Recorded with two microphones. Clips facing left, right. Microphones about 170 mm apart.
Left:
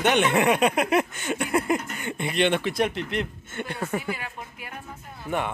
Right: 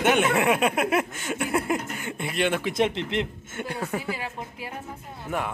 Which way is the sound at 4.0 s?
30° right (ahead or behind).